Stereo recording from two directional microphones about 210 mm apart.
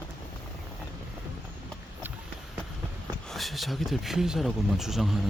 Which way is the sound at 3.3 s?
Centre (ahead or behind).